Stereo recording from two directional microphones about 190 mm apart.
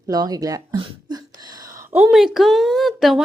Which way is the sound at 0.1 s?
20° right (ahead or behind).